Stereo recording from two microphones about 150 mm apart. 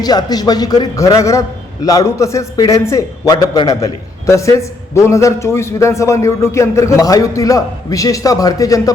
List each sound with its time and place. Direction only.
0.0 s a man's voice: 25° left (ahead or behind)